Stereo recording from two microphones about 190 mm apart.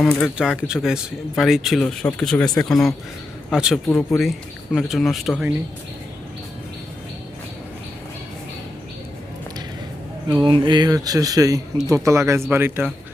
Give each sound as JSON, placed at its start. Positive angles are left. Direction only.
{"t": 0.0, "sound": "speech", "side_deg": 5}
{"t": 3.8, "sound": "speech", "side_deg": 15}
{"t": 4.2, "sound": "speech", "side_deg": 0}
{"t": 10.2, "sound": "speech", "side_deg": -25}